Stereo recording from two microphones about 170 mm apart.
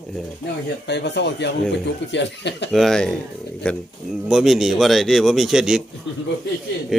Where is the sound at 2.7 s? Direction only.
Centre (ahead or behind).